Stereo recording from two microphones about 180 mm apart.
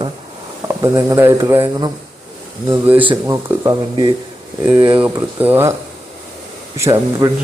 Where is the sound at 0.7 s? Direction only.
15° right (ahead or behind).